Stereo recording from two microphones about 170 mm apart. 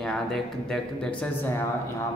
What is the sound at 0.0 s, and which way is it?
Speech, 5° left (ahead or behind).